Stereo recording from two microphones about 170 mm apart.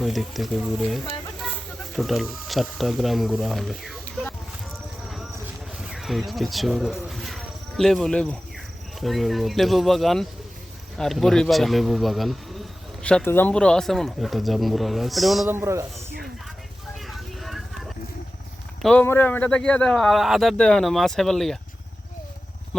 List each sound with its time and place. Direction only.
0.0 s speech: centre (ahead or behind)
5.8 s speech: centre (ahead or behind)
15.4 s a man's voice: 15° right (ahead or behind)
17.1 s a sound: centre (ahead or behind)
18.8 s speech: 5° left (ahead or behind)